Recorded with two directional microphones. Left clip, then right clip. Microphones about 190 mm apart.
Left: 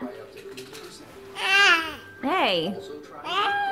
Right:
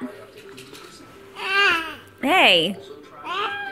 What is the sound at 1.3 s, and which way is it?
Babbling, 25° left (ahead or behind).